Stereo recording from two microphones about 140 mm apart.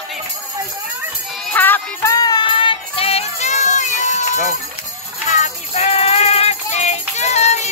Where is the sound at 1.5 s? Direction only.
15° left (ahead or behind).